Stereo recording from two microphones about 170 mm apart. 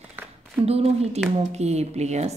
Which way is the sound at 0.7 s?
35° right (ahead or behind).